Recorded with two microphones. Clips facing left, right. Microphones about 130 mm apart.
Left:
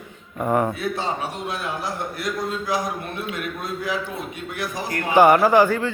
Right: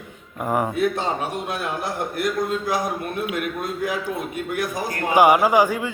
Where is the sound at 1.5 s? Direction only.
55° right (ahead or behind).